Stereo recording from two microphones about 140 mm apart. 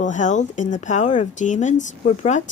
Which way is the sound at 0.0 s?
60° left (ahead or behind).